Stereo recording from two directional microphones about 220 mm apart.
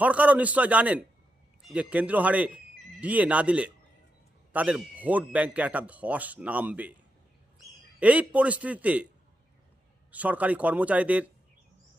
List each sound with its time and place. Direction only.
0.0 s a man's voice: 5° right (ahead or behind)
7.9 s a man's voice: 5° right (ahead or behind)
10.1 s a man's voice: 5° right (ahead or behind)